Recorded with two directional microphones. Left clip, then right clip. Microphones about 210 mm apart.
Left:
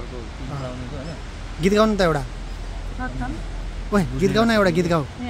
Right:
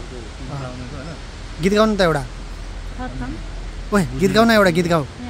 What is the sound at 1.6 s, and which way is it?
Speech, 5° right (ahead or behind).